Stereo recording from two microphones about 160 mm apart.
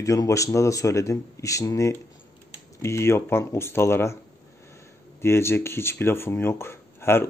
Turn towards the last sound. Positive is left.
turn(degrees=15)  # may be behind; listen again after turning